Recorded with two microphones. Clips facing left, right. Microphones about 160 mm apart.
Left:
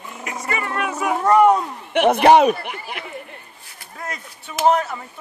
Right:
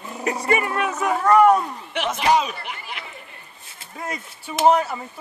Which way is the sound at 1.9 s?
60° left (ahead or behind).